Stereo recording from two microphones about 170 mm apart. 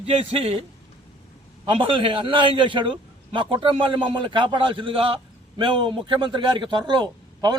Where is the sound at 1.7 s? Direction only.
30° right (ahead or behind).